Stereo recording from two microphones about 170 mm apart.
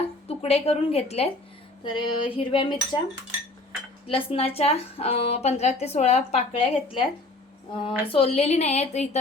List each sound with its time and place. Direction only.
0.3 s a woman's voice: 35° left (ahead or behind)
1.8 s cutlery: 25° left (ahead or behind)
4.0 s a woman's voice: 35° left (ahead or behind)